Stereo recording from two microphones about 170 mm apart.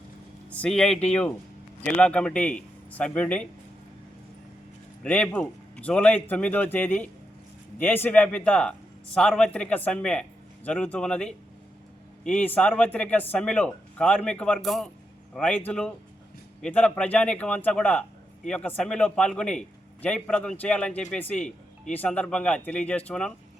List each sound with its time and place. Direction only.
0.5 s a man's voice: 5° left (ahead or behind)
5.0 s a man's voice: 10° left (ahead or behind)